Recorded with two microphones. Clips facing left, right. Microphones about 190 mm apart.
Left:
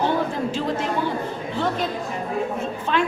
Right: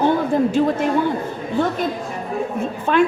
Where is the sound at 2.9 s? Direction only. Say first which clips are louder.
Right 6 dB; 50° right (ahead or behind).